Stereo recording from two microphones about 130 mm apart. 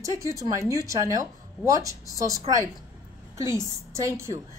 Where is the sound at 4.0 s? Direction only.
20° right (ahead or behind).